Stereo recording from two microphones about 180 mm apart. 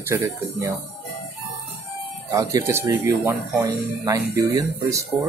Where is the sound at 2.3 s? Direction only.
20° right (ahead or behind).